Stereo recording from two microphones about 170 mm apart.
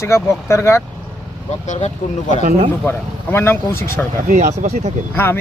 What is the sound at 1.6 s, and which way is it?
Speech, 45° left (ahead or behind).